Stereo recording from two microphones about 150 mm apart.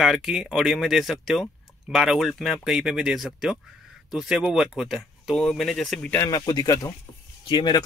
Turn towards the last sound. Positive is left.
turn(degrees=30)  # may be behind; listen again after turning